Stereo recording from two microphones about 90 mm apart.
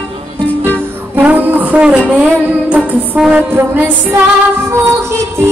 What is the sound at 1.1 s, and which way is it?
Music, 20° right (ahead or behind).